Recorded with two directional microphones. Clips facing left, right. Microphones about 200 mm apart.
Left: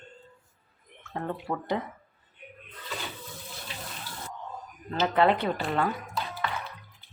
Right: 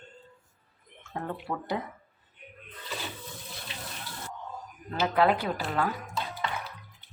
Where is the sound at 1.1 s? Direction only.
5° right (ahead or behind).